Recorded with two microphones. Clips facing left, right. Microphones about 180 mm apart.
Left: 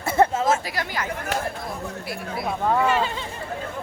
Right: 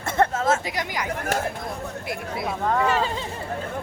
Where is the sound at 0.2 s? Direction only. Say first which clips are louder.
Left 2 dB; 10° left (ahead or behind).